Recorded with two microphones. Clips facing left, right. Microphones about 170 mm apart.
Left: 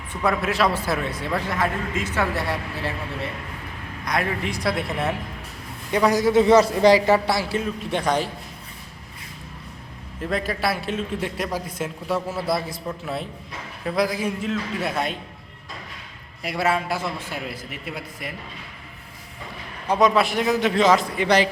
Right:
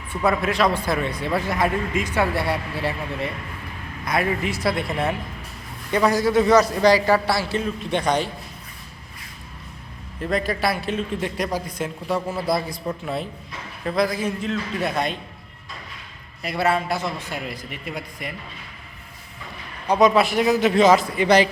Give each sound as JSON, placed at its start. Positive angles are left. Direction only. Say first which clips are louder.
{"t": 0.2, "sound": "a man's voice", "louder": "right 1 dB", "side_deg": 0}
{"t": 1.5, "sound": "a man's voice", "louder": "right 2 dB", "side_deg": -15}
{"t": 6.1, "sound": "a man's voice", "louder": "left 2 dB", "side_deg": 20}
{"t": 7.6, "sound": "a man's voice", "louder": "right 1 dB", "side_deg": 5}
{"t": 10.2, "sound": "a man's voice", "louder": "right 2 dB", "side_deg": 5}
{"t": 16.4, "sound": "a man's voice", "louder": "right 1 dB", "side_deg": 5}
{"t": 19.9, "sound": "a man's voice", "louder": "right 2 dB", "side_deg": 0}